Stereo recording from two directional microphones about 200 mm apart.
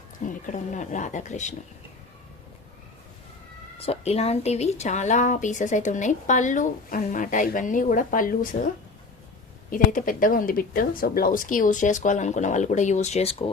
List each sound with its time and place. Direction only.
0.3 s a woman's voice: 40° left (ahead or behind)
3.8 s a woman's voice: 30° left (ahead or behind)